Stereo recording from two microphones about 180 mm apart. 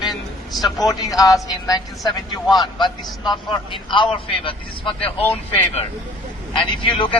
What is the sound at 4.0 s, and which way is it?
Speech, 30° left (ahead or behind).